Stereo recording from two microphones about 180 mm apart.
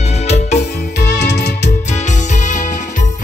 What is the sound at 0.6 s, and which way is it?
Music, 65° left (ahead or behind).